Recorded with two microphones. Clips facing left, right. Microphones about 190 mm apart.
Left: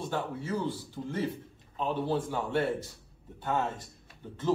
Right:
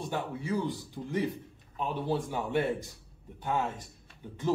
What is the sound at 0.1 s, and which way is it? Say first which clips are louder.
Speech: right 1 dB; 15° right (ahead or behind).